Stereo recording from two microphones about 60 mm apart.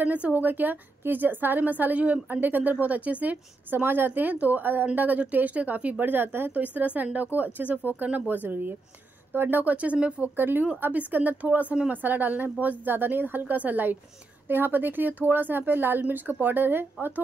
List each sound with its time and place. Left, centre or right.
0.0 s a woman's voice: right
10.3 s a woman's voice: right